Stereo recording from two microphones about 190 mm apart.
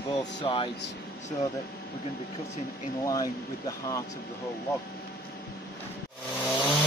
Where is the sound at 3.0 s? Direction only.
20° left (ahead or behind).